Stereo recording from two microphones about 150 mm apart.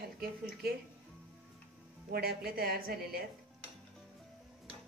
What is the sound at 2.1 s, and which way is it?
Speech, 90° right.